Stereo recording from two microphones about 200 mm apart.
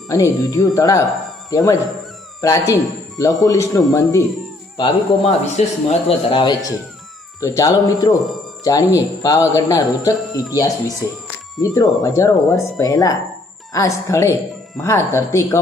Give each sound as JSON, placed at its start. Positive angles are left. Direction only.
{"t": 0.1, "sound": "speech", "side_deg": 15}
{"t": 4.8, "sound": "speech", "side_deg": 30}